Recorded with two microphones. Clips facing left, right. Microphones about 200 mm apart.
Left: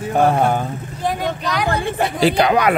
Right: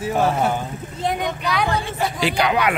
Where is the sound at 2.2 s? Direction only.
40° left (ahead or behind).